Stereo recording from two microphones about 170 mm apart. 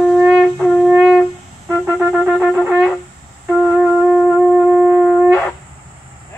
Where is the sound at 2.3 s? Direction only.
Centre (ahead or behind).